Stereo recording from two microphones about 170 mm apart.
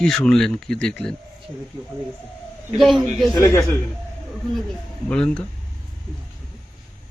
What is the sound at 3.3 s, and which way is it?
Speech, 20° left (ahead or behind).